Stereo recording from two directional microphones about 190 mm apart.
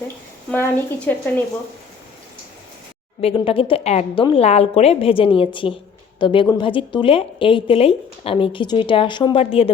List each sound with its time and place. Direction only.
0.5 s speech: 10° left (ahead or behind)
3.2 s a woman's voice: 30° left (ahead or behind)